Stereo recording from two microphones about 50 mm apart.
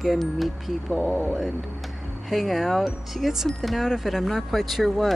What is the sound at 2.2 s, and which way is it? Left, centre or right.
Speech, centre.